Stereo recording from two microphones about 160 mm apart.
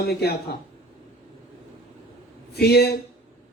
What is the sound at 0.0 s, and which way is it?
Speech, 90° left.